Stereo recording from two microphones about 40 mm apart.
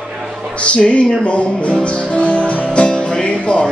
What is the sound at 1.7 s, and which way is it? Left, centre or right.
Music, left.